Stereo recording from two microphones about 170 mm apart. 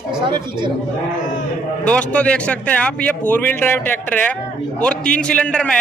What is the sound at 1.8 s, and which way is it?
A man's voice, 5° left (ahead or behind).